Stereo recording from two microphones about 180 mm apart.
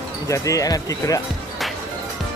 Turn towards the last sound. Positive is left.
turn(degrees=20)  # may be behind; listen again after turning